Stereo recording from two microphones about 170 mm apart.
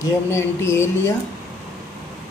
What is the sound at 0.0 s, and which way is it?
Speech, 15° left (ahead or behind).